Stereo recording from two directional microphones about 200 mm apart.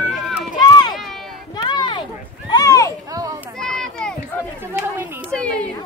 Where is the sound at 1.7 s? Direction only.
20° left (ahead or behind).